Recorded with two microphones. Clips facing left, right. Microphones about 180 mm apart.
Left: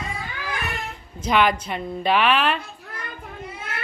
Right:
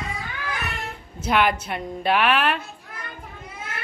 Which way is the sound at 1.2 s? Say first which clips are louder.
Left 1 dB; 10° right (ahead or behind).